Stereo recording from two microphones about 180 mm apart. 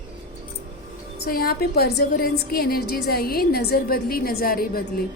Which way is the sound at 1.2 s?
55° left (ahead or behind).